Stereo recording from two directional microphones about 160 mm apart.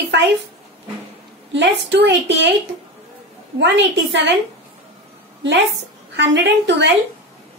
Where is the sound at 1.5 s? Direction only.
90° right.